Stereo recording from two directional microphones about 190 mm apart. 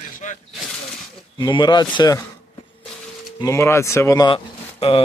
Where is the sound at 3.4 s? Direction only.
15° left (ahead or behind).